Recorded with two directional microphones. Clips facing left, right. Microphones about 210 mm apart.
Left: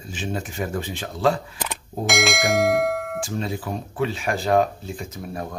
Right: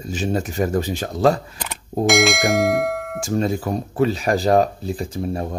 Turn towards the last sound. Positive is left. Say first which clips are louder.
# right 7 dB
turn(degrees=-30)  # may be behind; listen again after turning